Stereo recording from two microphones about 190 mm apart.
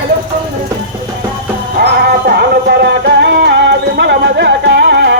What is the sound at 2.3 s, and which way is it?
Music, 60° right (ahead or behind).